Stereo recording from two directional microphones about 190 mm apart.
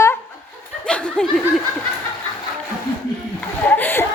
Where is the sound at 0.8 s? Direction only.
5° left (ahead or behind).